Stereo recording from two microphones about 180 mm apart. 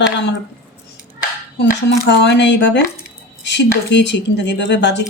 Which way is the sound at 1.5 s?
75° left (ahead or behind).